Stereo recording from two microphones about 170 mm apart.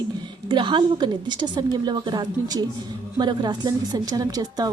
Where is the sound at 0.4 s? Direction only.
30° right (ahead or behind).